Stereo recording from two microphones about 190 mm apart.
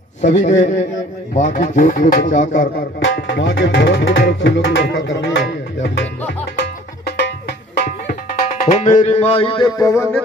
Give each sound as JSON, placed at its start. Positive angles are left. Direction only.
{"t": 0.2, "sound": "music", "side_deg": 40}
{"t": 3.0, "sound": "music", "side_deg": 70}
{"t": 7.1, "sound": "music", "side_deg": 60}
{"t": 8.6, "sound": "music", "side_deg": 40}